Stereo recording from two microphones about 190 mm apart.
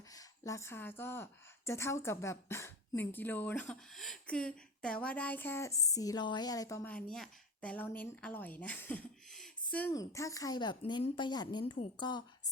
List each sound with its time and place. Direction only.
0.1 s a woman's voice: 15° left (ahead or behind)